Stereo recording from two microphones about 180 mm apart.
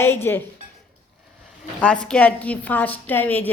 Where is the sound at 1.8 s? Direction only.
5° left (ahead or behind).